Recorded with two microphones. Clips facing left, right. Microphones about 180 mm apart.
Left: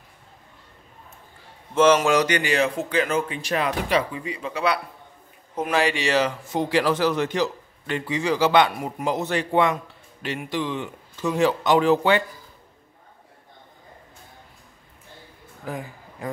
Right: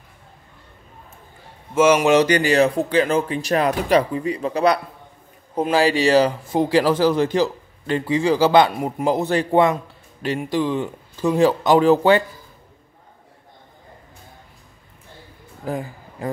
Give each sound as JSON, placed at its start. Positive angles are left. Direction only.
{"t": 1.7, "sound": "speech", "side_deg": -10}
{"t": 2.0, "sound": "speech", "side_deg": -30}
{"t": 15.6, "sound": "a sound", "side_deg": -35}